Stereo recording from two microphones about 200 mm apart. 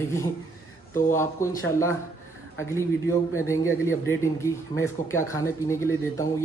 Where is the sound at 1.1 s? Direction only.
15° left (ahead or behind).